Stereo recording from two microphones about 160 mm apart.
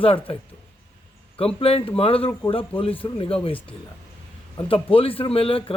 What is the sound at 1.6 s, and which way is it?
Speech, 35° left (ahead or behind).